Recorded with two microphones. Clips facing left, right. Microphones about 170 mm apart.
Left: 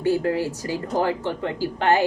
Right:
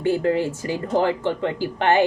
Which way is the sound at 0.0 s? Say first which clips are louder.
Right 1 dB; 20° right (ahead or behind).